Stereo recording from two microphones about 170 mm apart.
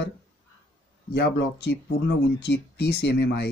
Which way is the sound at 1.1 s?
80° left.